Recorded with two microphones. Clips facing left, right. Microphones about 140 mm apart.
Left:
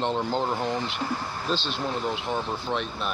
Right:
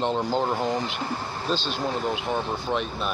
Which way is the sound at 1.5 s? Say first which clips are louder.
Right 1 dB; 45° right (ahead or behind).